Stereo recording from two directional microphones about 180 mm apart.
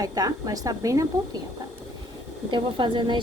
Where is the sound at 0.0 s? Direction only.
20° right (ahead or behind).